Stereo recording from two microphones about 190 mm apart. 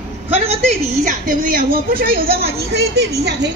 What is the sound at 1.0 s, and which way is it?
A woman's voice, 45° right (ahead or behind).